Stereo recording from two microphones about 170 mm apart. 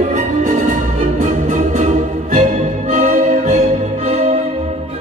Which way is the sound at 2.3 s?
45° right (ahead or behind).